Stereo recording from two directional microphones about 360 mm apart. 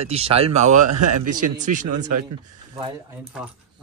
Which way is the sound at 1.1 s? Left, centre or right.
Right.